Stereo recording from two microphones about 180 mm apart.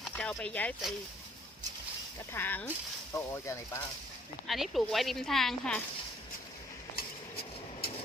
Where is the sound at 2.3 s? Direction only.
10° left (ahead or behind).